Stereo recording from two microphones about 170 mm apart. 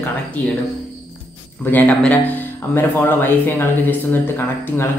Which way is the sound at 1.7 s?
10° left (ahead or behind).